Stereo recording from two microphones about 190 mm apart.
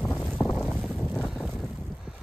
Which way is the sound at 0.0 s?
Centre (ahead or behind).